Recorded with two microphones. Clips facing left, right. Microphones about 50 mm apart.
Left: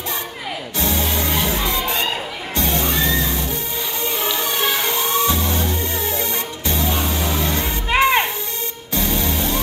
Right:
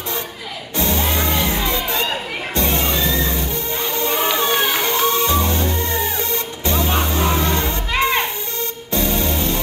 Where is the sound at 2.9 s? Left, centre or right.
Left.